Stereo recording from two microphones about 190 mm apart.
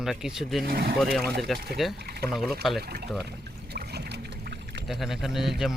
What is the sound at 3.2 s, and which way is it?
Pour, 60° right (ahead or behind).